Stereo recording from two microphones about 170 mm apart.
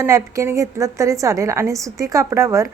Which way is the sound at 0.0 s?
15° right (ahead or behind).